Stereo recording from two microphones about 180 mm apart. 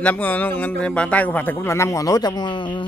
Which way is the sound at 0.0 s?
10° left (ahead or behind).